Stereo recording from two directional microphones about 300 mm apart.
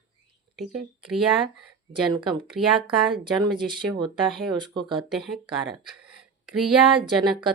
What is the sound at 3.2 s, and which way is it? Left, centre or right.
Speech, centre.